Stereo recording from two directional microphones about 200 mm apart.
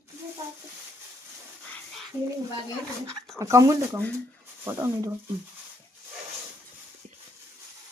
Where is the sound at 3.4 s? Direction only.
15° right (ahead or behind).